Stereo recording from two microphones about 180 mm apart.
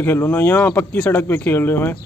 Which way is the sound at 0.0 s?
10° left (ahead or behind).